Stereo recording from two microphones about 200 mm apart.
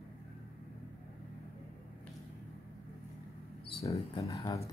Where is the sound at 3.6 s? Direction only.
30° left (ahead or behind).